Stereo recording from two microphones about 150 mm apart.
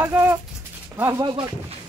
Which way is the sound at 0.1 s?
10° right (ahead or behind).